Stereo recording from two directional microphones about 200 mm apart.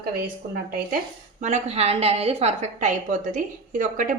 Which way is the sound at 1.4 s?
35° right (ahead or behind).